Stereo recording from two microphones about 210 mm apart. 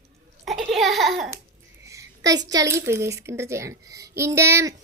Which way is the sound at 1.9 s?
15° right (ahead or behind).